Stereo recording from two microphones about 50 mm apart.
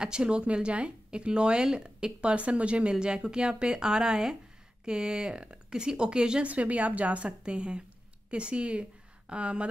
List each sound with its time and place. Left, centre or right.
0.0 s speech: centre
6.4 s speech: right